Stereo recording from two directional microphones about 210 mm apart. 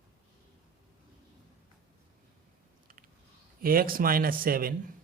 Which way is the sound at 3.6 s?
45° right (ahead or behind).